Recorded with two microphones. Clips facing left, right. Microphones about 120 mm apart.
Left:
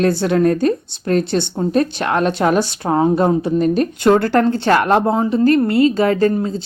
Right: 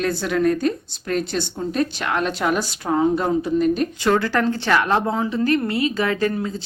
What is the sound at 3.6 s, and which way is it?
Speech, 45° left (ahead or behind).